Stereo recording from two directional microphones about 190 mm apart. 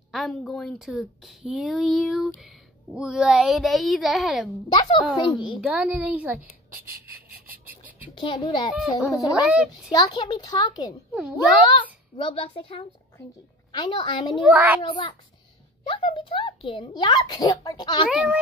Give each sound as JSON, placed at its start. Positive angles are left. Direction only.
{"t": 0.1, "sound": "speech", "side_deg": 0}
{"t": 4.7, "sound": "a child's voice", "side_deg": 25}
{"t": 5.6, "sound": "a woman's voice", "side_deg": -5}
{"t": 8.1, "sound": "a child's voice", "side_deg": 25}
{"t": 8.7, "sound": "speech", "side_deg": 0}
{"t": 9.9, "sound": "a child's voice", "side_deg": 20}
{"t": 14.4, "sound": "a woman's voice", "side_deg": -10}
{"t": 14.8, "sound": "a child's voice", "side_deg": 25}
{"t": 18.1, "sound": "speech", "side_deg": -5}